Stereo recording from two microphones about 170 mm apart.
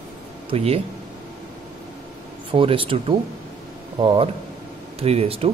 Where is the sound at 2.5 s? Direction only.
30° right (ahead or behind).